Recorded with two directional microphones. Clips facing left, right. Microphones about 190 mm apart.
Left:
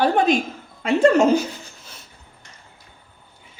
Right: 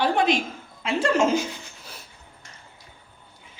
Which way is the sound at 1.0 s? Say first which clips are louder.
Left 6 dB; 40° left (ahead or behind).